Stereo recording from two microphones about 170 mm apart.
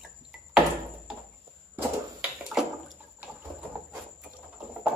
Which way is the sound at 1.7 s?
10° right (ahead or behind).